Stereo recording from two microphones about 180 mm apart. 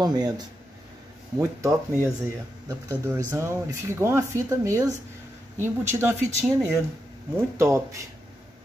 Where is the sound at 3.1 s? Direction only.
15° right (ahead or behind).